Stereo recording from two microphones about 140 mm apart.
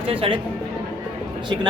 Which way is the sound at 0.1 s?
40° right (ahead or behind).